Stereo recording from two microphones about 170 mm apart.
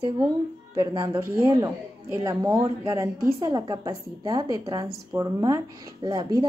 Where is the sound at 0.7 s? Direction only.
25° right (ahead or behind).